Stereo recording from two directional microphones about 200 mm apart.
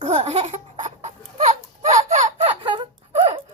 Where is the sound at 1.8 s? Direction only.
40° right (ahead or behind).